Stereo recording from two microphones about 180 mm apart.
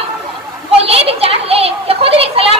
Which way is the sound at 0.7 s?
35° right (ahead or behind).